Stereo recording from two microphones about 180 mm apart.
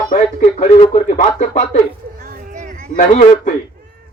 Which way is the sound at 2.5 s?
40° right (ahead or behind).